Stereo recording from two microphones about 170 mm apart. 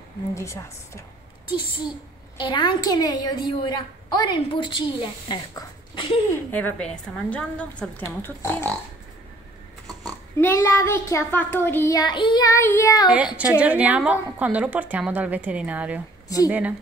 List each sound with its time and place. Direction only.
0.3 s a child's voice: 15° left (ahead or behind)
2.3 s a woman's voice: 30° left (ahead or behind)
6.5 s a child's voice: 10° left (ahead or behind)
10.0 s a child's voice: 10° left (ahead or behind)
13.1 s speech: 10° right (ahead or behind)